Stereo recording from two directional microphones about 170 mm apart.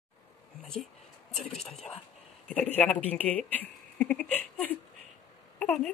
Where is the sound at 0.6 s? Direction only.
5° left (ahead or behind).